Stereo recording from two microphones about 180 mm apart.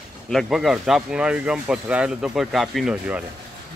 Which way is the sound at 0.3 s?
Centre (ahead or behind).